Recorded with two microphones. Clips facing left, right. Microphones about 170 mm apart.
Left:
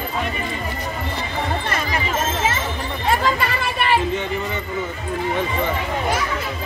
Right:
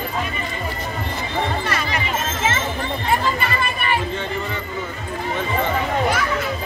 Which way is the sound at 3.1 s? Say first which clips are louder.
Left 2 dB; 90° left.